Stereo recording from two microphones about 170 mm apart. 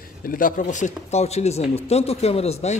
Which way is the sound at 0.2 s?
55° left (ahead or behind).